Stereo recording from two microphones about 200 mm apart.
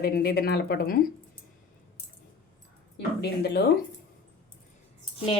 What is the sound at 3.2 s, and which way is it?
Speech, 55° left (ahead or behind).